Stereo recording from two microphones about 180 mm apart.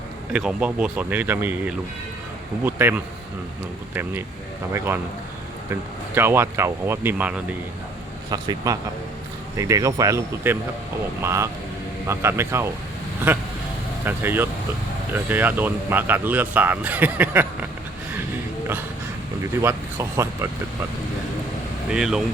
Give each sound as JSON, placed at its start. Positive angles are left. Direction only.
{"t": 0.3, "sound": "speech", "side_deg": -5}
{"t": 6.1, "sound": "speech", "side_deg": -15}
{"t": 8.3, "sound": "a man's voice", "side_deg": -20}
{"t": 19.6, "sound": "speech", "side_deg": -15}
{"t": 21.8, "sound": "speech", "side_deg": -5}